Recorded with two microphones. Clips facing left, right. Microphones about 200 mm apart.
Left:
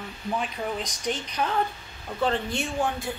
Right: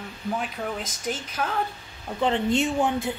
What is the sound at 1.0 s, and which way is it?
Speech, 5° right (ahead or behind).